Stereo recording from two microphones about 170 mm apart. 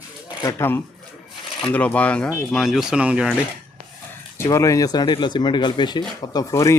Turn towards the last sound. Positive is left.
turn(degrees=20)  # may be behind; listen again after turning